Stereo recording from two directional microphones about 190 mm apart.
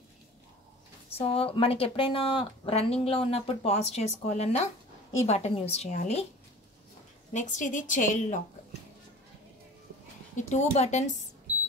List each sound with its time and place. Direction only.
1.1 s speech: 30° left (ahead or behind)
7.3 s speech: 40° left (ahead or behind)
10.3 s speech: 35° left (ahead or behind)